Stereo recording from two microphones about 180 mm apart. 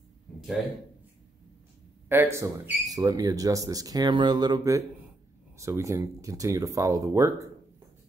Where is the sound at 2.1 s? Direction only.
15° right (ahead or behind).